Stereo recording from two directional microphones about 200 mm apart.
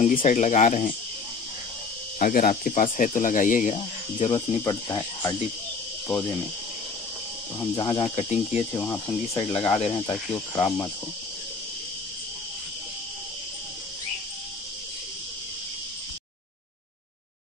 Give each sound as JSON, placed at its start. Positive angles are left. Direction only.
{"t": 0.0, "sound": "speech", "side_deg": 40}
{"t": 2.1, "sound": "speech", "side_deg": 45}
{"t": 4.3, "sound": "speech", "side_deg": 20}
{"t": 7.7, "sound": "cricket", "side_deg": 20}
{"t": 8.7, "sound": "speech", "side_deg": 15}